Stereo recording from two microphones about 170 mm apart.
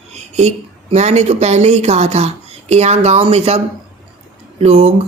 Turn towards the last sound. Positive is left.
turn(degrees=-35)  # may be behind; listen again after turning